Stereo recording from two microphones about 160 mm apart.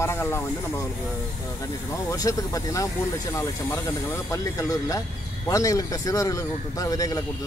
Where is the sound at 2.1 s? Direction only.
20° left (ahead or behind).